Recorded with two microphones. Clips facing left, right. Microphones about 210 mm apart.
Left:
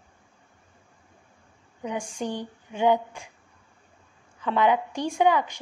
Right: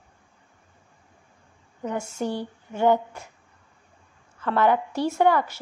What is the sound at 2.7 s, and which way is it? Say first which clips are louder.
Speech: right 1 dB; 10° left (ahead or behind).